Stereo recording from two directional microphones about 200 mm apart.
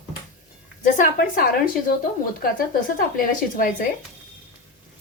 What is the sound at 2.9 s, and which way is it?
Speech, 45° left (ahead or behind).